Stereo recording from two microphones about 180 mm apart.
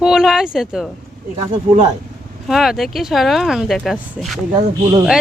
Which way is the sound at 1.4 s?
35° right (ahead or behind).